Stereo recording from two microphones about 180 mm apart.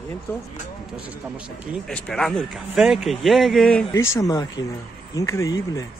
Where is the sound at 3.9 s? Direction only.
15° left (ahead or behind).